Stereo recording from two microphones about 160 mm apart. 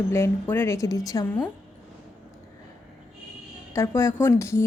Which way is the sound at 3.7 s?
20° left (ahead or behind).